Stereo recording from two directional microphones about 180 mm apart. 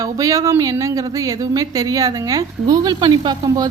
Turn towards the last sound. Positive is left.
turn(degrees=-25)  # may be behind; listen again after turning